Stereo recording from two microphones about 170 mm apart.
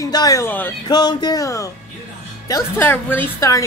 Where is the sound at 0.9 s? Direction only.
25° left (ahead or behind).